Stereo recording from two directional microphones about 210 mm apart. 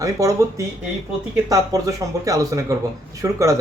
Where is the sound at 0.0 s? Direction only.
15° right (ahead or behind).